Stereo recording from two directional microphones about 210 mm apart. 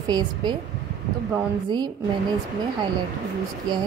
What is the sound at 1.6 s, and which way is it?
Speech, 20° right (ahead or behind).